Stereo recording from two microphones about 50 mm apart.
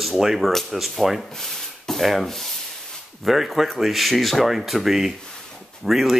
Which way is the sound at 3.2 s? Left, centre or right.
Centre.